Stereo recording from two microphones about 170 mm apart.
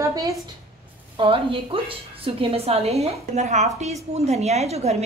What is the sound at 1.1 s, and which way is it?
A woman's voice, 35° right (ahead or behind).